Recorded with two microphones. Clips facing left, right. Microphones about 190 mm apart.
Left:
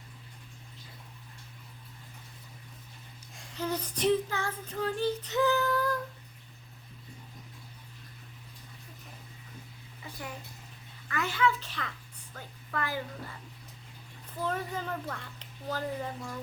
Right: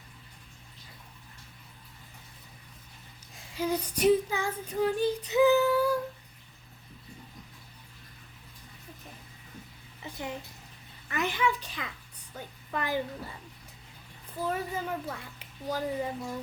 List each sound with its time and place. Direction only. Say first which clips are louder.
3.3 s child singing: right 3 dB; 10° right (ahead or behind)
10.0 s a sound: right 4 dB; 20° right (ahead or behind)
11.1 s child singing: even; 20° right (ahead or behind)
12.3 s a woman's voice: right 2 dB; 20° right (ahead or behind)
14.4 s child singing: right 1 dB; 10° right (ahead or behind)